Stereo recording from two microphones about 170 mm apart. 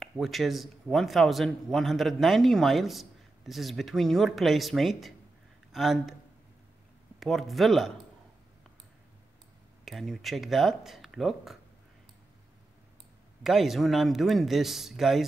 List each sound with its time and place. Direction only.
0.0 s speech: centre (ahead or behind)
7.2 s speech: centre (ahead or behind)
9.8 s speech: centre (ahead or behind)
13.4 s speech: centre (ahead or behind)